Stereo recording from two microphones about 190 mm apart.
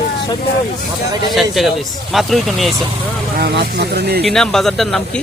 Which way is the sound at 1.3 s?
Centre (ahead or behind).